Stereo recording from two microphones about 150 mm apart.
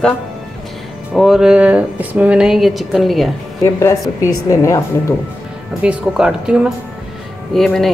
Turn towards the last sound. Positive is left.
turn(degrees=0)  # may be behind; listen again after turning